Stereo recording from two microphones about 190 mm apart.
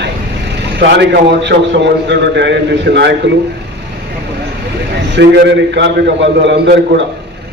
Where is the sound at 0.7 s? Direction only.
65° right (ahead or behind).